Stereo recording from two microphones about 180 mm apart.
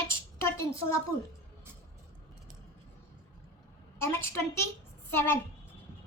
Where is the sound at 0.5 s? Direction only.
15° left (ahead or behind).